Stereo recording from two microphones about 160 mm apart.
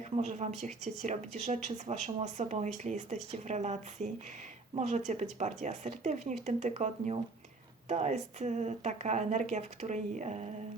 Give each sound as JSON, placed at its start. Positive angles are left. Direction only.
{"t": 0.2, "sound": "speech", "side_deg": -45}